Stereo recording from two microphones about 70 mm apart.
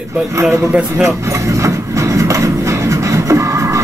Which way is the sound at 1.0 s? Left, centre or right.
Right.